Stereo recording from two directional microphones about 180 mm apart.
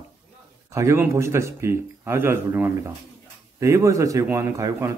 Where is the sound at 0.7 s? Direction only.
15° right (ahead or behind).